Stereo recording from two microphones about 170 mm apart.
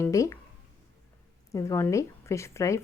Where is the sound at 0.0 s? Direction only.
20° left (ahead or behind).